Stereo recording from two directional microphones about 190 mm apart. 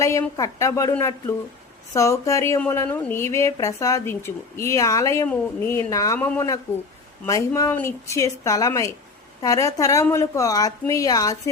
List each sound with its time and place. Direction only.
0.0 s speech: 15° left (ahead or behind)